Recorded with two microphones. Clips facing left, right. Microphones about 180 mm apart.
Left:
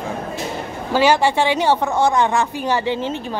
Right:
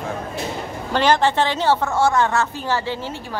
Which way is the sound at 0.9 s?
10° left (ahead or behind).